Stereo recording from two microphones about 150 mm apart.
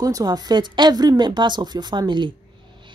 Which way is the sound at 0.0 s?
25° right (ahead or behind).